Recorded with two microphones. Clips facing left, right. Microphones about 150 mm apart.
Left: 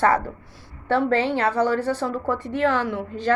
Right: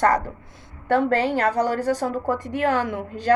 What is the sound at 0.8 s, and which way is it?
A woman's voice, 45° right (ahead or behind).